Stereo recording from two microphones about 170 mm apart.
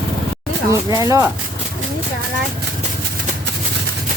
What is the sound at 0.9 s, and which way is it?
Speech, 20° right (ahead or behind).